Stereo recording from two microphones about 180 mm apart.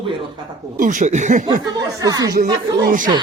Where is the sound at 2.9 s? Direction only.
45° right (ahead or behind).